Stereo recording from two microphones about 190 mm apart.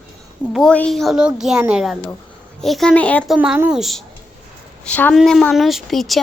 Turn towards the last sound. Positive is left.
turn(degrees=0)  # may be behind; listen again after turning